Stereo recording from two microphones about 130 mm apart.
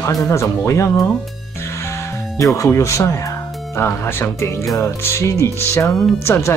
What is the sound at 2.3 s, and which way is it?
Speech, 25° left (ahead or behind).